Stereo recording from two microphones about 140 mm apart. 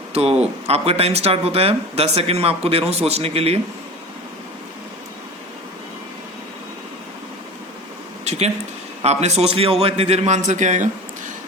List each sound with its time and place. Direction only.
0.1 s speech: 45° right (ahead or behind)
8.2 s a sound: 50° right (ahead or behind)
9.0 s speech: 50° right (ahead or behind)